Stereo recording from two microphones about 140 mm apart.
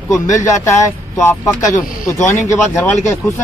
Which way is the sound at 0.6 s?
20° left (ahead or behind).